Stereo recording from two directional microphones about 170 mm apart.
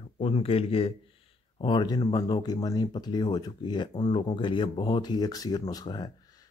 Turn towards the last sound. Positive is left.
turn(degrees=25)  # may be behind; listen again after turning